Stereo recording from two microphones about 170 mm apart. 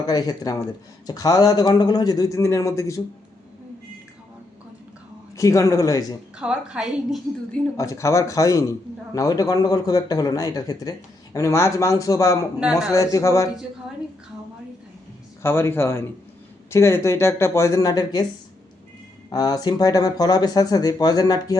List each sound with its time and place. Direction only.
0.1 s a man's voice: 20° left (ahead or behind)
5.4 s a man's voice: 20° left (ahead or behind)
6.4 s a woman's voice: 5° right (ahead or behind)
7.8 s a man's voice: 20° left (ahead or behind)
12.5 s a woman's voice: 5° right (ahead or behind)
12.9 s a man's voice: 20° left (ahead or behind)
15.4 s speech: 15° left (ahead or behind)
19.3 s a man's voice: 20° left (ahead or behind)